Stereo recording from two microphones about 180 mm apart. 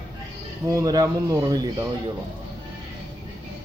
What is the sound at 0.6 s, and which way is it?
A man's voice, 20° right (ahead or behind).